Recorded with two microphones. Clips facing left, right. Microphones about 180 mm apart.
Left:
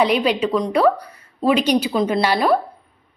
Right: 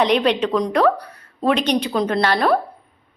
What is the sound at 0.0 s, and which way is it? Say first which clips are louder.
A woman's voice: even; 5° left (ahead or behind).